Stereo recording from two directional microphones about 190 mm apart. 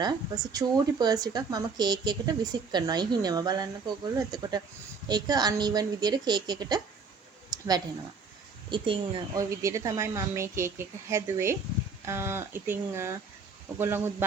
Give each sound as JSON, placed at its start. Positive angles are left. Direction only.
{"t": 0.0, "sound": "speech", "side_deg": -20}
{"t": 7.5, "sound": "a sound", "side_deg": -20}
{"t": 8.7, "sound": "a woman's voice", "side_deg": -25}